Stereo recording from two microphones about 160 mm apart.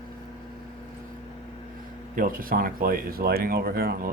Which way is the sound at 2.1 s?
60° right (ahead or behind).